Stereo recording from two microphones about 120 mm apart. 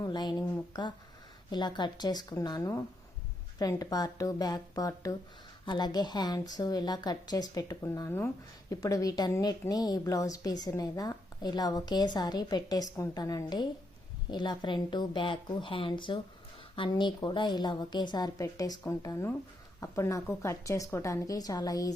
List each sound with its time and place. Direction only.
0.0 s a woman's voice: 35° left (ahead or behind)